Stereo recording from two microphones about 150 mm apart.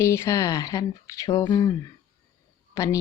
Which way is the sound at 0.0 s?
20° left (ahead or behind).